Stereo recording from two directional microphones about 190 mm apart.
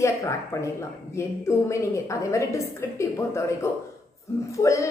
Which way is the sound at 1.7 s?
15° left (ahead or behind).